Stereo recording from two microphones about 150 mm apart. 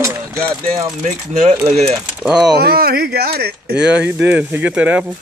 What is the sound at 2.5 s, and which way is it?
Speech, 90° right.